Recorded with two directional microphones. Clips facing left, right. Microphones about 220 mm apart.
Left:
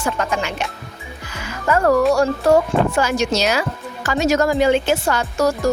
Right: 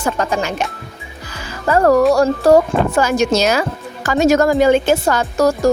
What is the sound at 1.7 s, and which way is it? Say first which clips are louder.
Speech: right 3 dB; 40° right (ahead or behind).